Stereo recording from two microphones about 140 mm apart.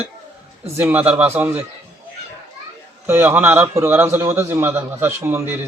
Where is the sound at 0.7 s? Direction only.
15° right (ahead or behind).